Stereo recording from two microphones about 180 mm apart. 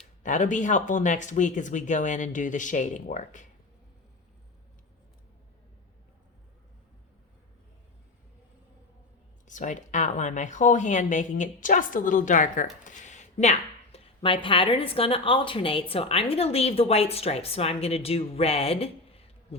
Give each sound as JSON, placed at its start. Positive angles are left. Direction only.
{"t": 0.2, "sound": "speech", "side_deg": 45}
{"t": 9.5, "sound": "speech", "side_deg": 45}